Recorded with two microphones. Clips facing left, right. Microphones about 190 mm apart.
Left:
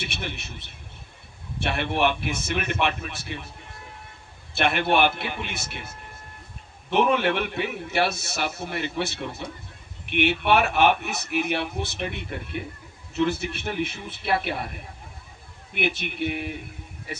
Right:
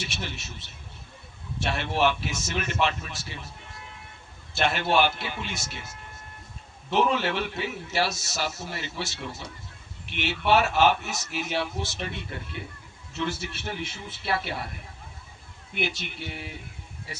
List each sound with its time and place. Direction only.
0.0 s a man's voice: 60° left (ahead or behind)
4.5 s a man's voice: 60° left (ahead or behind)
6.9 s a man's voice: 60° left (ahead or behind)
13.1 s a man's voice: 60° left (ahead or behind)
15.7 s a man's voice: 60° left (ahead or behind)